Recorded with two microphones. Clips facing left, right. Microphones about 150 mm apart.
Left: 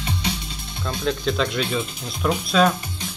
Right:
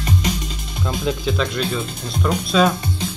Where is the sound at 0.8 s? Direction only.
5° right (ahead or behind).